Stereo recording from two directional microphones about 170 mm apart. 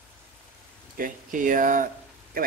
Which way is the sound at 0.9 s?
55° right (ahead or behind).